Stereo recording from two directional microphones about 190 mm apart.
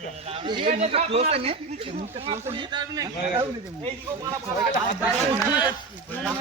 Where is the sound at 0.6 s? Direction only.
35° right (ahead or behind).